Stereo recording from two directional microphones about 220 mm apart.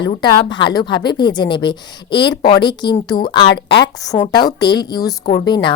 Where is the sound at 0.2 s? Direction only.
20° left (ahead or behind).